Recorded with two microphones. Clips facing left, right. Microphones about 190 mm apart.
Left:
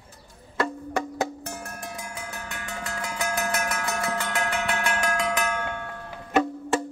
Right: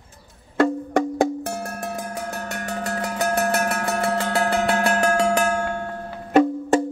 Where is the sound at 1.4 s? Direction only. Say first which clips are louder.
Right 8 dB; 45° right (ahead or behind).